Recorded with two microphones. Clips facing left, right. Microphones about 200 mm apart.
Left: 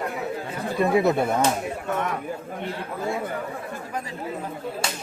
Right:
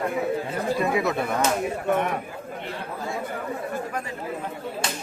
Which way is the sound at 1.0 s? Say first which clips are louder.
Left 4 dB; 25° left (ahead or behind).